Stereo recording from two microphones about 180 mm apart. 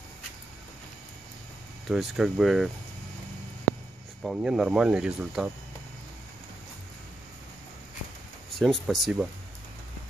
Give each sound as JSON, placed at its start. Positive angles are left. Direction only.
{"t": 1.9, "sound": "speech", "side_deg": 0}
{"t": 4.2, "sound": "speech", "side_deg": -5}
{"t": 8.5, "sound": "speech", "side_deg": 0}